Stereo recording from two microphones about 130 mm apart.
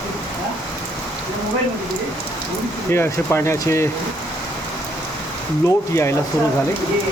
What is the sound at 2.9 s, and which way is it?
Speech, 20° left (ahead or behind).